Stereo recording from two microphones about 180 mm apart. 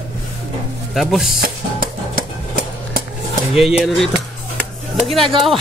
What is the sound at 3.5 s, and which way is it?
Speech, centre (ahead or behind).